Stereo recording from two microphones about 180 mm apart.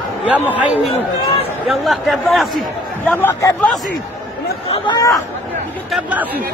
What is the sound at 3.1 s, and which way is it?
Speech, 10° left (ahead or behind).